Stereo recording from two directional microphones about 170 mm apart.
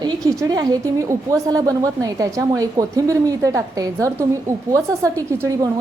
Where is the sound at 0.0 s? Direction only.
25° right (ahead or behind).